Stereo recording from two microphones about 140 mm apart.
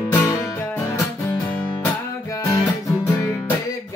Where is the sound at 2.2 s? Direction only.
25° left (ahead or behind).